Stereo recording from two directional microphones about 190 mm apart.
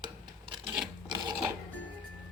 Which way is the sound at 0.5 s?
25° right (ahead or behind).